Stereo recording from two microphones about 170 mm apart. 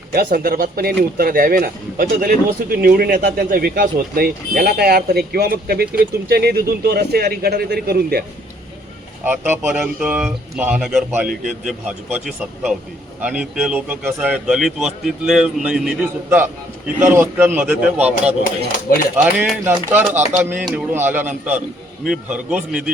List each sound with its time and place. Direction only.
0.1 s speech: 60° right (ahead or behind)
9.2 s a man's voice: 10° right (ahead or behind)
19.1 s a man's voice: 10° right (ahead or behind)